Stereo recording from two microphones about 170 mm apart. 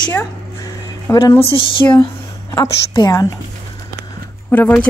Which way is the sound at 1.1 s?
20° left (ahead or behind).